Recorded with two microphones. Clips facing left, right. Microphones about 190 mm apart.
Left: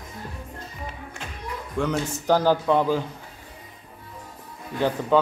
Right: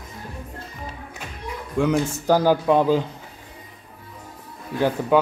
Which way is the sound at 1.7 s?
10° right (ahead or behind).